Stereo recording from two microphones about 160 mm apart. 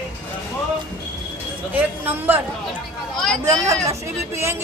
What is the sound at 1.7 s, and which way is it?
Speech, 10° right (ahead or behind).